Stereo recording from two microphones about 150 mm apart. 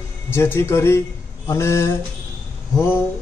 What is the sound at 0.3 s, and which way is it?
A man's voice, 15° left (ahead or behind).